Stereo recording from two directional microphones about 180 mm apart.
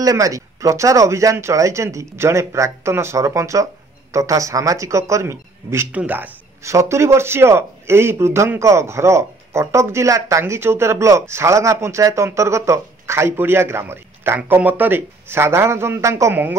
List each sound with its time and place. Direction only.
0.0 s speech: 20° right (ahead or behind)